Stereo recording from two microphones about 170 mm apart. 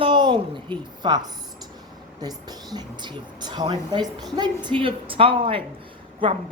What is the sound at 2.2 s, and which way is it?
Speech, 25° right (ahead or behind).